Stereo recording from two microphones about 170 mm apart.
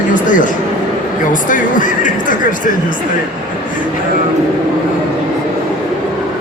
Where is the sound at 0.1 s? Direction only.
50° left (ahead or behind).